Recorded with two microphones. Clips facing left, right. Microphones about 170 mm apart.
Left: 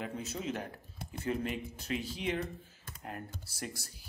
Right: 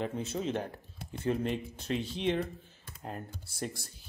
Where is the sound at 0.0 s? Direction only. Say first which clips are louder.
Right 5 dB; 30° right (ahead or behind).